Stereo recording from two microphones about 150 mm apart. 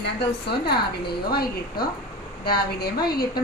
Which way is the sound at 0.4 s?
90° left.